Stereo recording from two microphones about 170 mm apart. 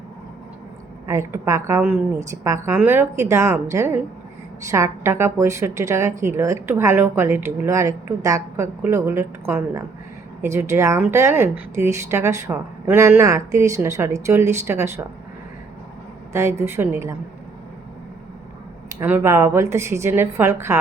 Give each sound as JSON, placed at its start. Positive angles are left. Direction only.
{"t": 1.0, "sound": "a woman's voice", "side_deg": -15}
{"t": 16.3, "sound": "a woman's voice", "side_deg": -15}
{"t": 19.0, "sound": "a woman's voice", "side_deg": -15}